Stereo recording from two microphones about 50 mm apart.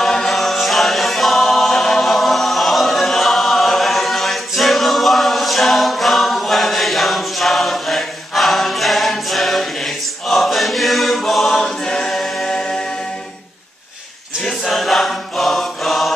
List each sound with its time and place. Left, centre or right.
0.0 s choir: centre
11.9 s a capella: centre
14.4 s choir: centre